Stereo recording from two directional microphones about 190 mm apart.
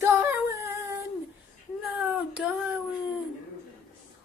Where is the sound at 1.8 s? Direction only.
5° right (ahead or behind).